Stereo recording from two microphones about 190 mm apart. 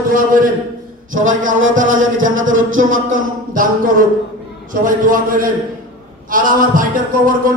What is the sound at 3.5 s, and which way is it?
Speech, 45° right (ahead or behind).